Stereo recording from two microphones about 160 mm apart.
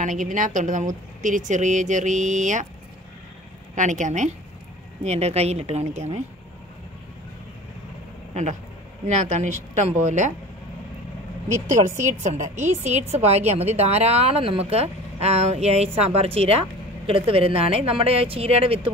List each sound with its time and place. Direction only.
0.0 s a woman's voice: 50° right (ahead or behind)
3.7 s a woman's voice: 50° right (ahead or behind)
9.0 s a woman's voice: 50° right (ahead or behind)
11.5 s speech: 15° right (ahead or behind)
12.2 s a woman's voice: 45° right (ahead or behind)